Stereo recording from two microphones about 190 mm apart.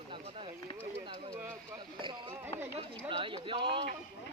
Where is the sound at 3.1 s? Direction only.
25° right (ahead or behind).